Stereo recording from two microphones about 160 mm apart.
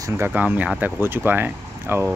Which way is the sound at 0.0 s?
10° right (ahead or behind).